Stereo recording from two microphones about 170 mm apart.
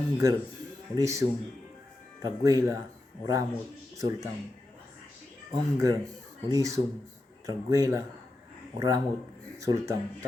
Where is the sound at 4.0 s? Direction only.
20° right (ahead or behind).